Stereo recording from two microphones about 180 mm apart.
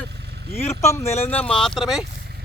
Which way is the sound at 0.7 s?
15° left (ahead or behind).